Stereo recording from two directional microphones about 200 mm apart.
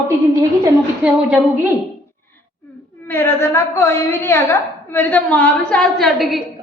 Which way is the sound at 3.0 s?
10° left (ahead or behind).